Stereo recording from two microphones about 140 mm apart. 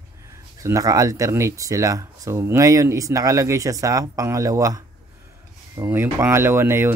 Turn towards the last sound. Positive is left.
turn(degrees=-20)  # may be behind; listen again after turning